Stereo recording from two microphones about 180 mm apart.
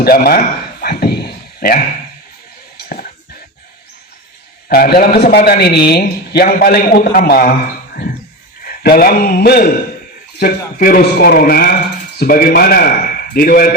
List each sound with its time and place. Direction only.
0.0 s a sound: 55° left (ahead or behind)
4.7 s a man's voice: 55° left (ahead or behind)
8.6 s a man's voice: 55° left (ahead or behind)